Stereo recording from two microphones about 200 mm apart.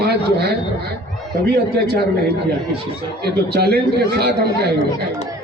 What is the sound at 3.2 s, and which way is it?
Speech, 50° right (ahead or behind).